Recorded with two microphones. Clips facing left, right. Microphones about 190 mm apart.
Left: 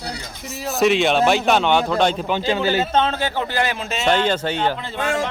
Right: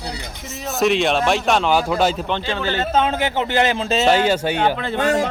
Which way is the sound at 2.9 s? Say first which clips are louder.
Right 1 dB; 15° right (ahead or behind).